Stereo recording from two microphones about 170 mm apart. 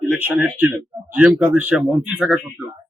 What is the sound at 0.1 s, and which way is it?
A man's voice, 10° right (ahead or behind).